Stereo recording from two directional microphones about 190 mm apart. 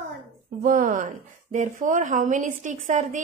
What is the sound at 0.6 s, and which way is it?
A woman's voice, 45° right (ahead or behind).